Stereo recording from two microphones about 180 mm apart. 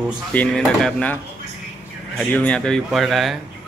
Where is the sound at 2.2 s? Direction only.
10° left (ahead or behind).